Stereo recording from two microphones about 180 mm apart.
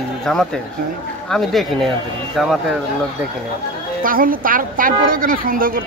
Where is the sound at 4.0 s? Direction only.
50° right (ahead or behind).